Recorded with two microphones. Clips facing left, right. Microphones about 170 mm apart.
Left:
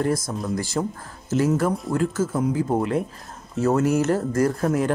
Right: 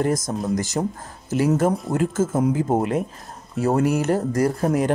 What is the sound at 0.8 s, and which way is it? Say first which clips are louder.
Speech: right 1 dB; 30° right (ahead or behind).